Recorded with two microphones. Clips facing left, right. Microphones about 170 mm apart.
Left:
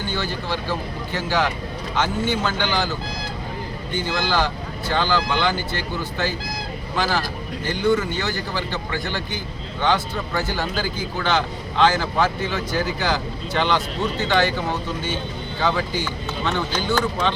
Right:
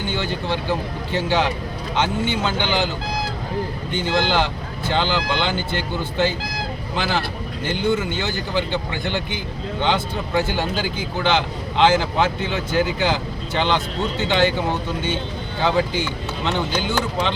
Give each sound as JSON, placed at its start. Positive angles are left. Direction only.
{"t": 0.1, "sound": "speech", "side_deg": -20}
{"t": 4.1, "sound": "speech", "side_deg": -25}
{"t": 7.7, "sound": "speech", "side_deg": -25}
{"t": 15.6, "sound": "speech", "side_deg": -20}